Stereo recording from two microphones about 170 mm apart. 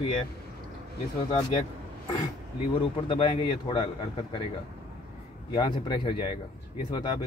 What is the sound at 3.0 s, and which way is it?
Speech, 30° left (ahead or behind).